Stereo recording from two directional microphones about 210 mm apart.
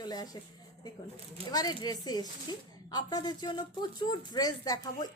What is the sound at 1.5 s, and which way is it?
Speech, 20° left (ahead or behind).